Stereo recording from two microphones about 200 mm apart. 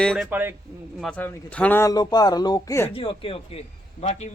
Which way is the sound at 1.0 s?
5° left (ahead or behind).